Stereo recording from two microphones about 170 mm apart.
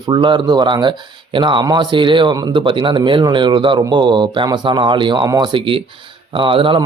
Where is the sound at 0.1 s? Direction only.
25° right (ahead or behind).